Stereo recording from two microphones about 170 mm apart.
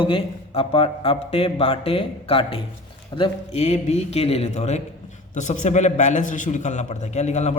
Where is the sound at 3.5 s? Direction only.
40° left (ahead or behind).